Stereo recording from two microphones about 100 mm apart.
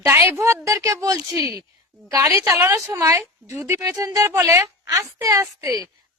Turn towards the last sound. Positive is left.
turn(degrees=-35)  # may be behind; listen again after turning